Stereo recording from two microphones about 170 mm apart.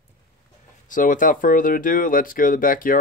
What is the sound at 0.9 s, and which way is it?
Speech, 50° left (ahead or behind).